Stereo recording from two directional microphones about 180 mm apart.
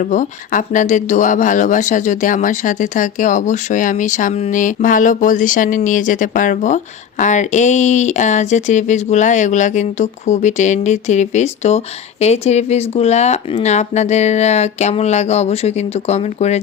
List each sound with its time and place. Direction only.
0.0 s speech: 45° left (ahead or behind)